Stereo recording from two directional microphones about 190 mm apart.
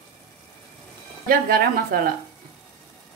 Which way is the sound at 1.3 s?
50° right (ahead or behind).